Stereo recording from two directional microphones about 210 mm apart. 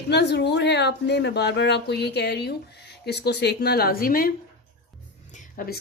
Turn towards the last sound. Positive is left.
turn(degrees=40)  # may be behind; listen again after turning